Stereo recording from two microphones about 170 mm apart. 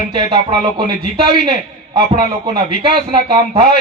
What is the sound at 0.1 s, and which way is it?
A man's voice, 30° right (ahead or behind).